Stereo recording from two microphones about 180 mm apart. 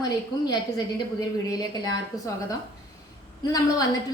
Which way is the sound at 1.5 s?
20° left (ahead or behind).